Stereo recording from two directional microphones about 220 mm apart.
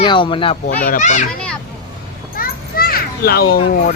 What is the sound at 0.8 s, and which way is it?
Speech, 35° left (ahead or behind).